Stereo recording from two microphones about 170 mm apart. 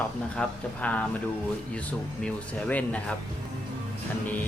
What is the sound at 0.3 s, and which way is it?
Speech, 10° left (ahead or behind).